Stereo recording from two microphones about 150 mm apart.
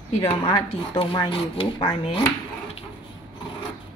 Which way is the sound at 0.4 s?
35° left (ahead or behind).